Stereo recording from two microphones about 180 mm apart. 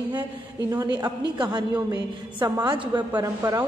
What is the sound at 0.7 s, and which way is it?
A woman's voice, 20° right (ahead or behind).